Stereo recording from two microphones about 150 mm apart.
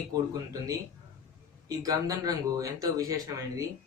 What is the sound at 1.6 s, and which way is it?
Speech, 25° right (ahead or behind).